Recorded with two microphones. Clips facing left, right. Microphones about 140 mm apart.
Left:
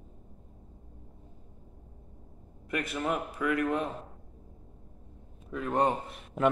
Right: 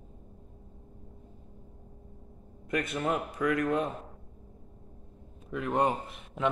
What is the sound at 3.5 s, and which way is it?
Speech, 25° left (ahead or behind).